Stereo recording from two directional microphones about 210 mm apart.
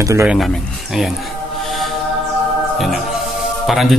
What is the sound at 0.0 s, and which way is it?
Speech, 15° right (ahead or behind).